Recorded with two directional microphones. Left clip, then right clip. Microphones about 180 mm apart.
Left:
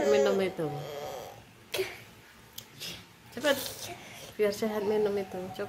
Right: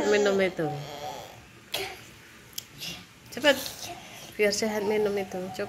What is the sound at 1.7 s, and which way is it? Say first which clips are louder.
Cough: even; 25° left (ahead or behind).